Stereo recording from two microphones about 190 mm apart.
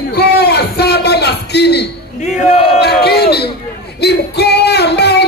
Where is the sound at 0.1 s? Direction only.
55° left (ahead or behind).